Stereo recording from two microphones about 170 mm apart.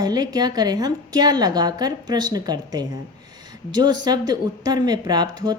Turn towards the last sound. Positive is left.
turn(degrees=-25)  # may be behind; listen again after turning